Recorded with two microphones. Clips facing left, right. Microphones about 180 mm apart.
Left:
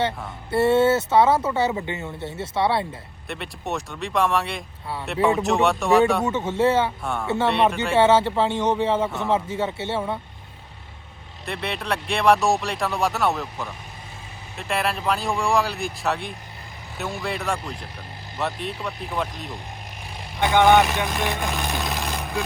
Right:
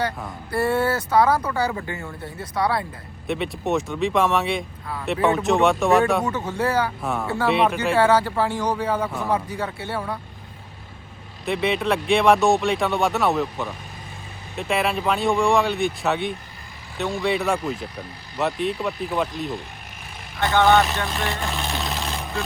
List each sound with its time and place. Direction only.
0.5 s speech: 25° left (ahead or behind)
3.2 s speech: centre (ahead or behind)
6.2 s speech: 20° left (ahead or behind)
7.0 s speech: centre (ahead or behind)
7.9 s speech: 25° left (ahead or behind)
9.0 s speech: centre (ahead or behind)
9.3 s speech: 25° left (ahead or behind)
11.4 s speech: centre (ahead or behind)
20.4 s speech: 15° left (ahead or behind)